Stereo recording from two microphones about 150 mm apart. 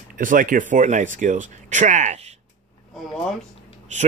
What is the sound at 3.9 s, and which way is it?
Speech, 50° right (ahead or behind).